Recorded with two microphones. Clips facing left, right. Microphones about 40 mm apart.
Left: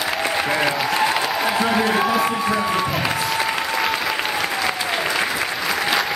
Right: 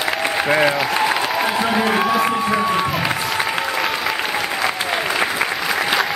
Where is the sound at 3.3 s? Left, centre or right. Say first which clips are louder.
Right 1 dB; centre.